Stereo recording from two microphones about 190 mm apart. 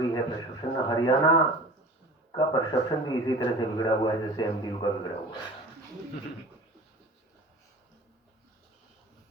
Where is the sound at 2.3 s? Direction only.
25° left (ahead or behind).